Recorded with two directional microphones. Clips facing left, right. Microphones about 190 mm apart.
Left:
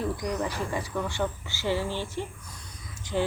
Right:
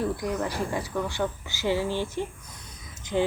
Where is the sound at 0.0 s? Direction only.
5° right (ahead or behind).